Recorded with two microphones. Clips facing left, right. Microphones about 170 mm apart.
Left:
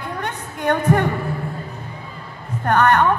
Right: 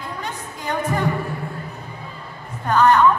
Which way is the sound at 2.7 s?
65° left (ahead or behind).